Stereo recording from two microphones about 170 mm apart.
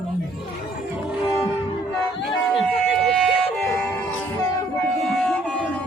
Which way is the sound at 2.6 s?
Centre (ahead or behind).